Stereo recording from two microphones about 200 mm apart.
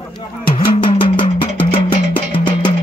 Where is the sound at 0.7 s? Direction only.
25° left (ahead or behind).